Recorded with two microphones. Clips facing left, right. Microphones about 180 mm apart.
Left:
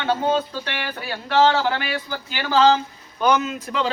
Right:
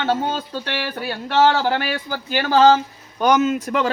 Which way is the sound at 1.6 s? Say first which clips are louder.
Right 2 dB; 45° right (ahead or behind).